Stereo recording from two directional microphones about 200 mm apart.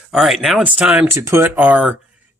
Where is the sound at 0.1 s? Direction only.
Centre (ahead or behind).